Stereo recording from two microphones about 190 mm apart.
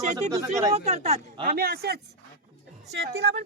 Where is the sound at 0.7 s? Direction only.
35° right (ahead or behind).